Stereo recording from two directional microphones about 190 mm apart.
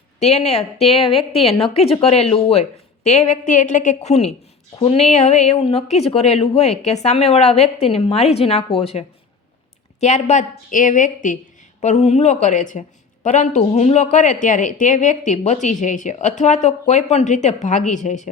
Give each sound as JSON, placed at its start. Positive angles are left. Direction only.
{"t": 0.2, "sound": "speech", "side_deg": 35}